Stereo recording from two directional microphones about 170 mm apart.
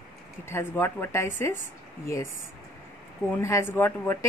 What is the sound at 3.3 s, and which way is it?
Speech, 15° left (ahead or behind).